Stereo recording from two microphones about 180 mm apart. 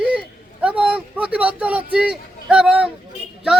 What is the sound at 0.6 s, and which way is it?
A man's voice, 5° right (ahead or behind).